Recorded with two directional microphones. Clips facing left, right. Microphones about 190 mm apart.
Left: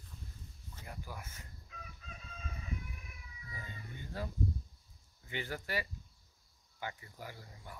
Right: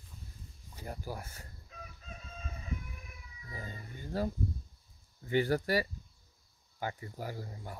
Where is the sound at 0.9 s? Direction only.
35° right (ahead or behind).